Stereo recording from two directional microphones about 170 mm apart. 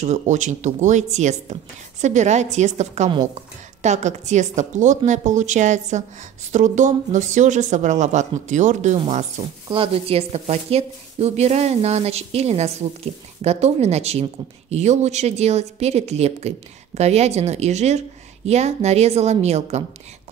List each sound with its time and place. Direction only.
0.0 s a woman's voice: 45° right (ahead or behind)